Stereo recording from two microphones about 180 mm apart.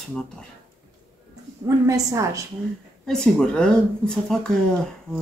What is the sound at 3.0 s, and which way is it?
Speech, 5° left (ahead or behind).